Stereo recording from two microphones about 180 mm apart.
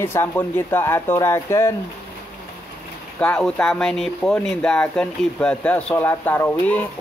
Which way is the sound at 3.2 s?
5° left (ahead or behind).